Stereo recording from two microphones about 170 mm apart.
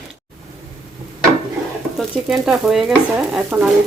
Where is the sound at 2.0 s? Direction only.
Centre (ahead or behind).